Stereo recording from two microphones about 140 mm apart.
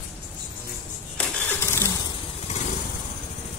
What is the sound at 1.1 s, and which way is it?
Engine starting, 15° left (ahead or behind).